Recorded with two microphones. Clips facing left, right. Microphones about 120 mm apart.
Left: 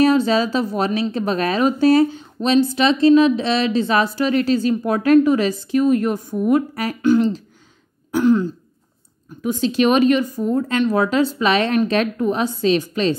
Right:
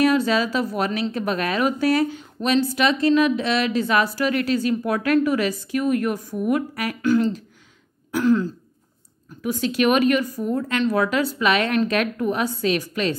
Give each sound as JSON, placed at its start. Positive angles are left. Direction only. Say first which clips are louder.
{"t": 0.0, "sound": "speech", "louder": "left 3 dB", "side_deg": 30}